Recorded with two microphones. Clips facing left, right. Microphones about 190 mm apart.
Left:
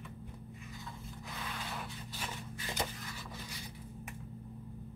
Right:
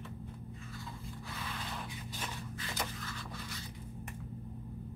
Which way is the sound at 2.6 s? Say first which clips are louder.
Left 2 dB; 20° left (ahead or behind).